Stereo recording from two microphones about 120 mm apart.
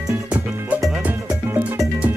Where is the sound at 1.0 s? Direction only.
10° right (ahead or behind).